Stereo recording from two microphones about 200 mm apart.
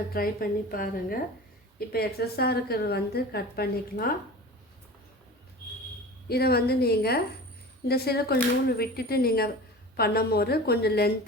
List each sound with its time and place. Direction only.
0.1 s a woman's voice: 50° left (ahead or behind)
6.2 s a woman's voice: 50° left (ahead or behind)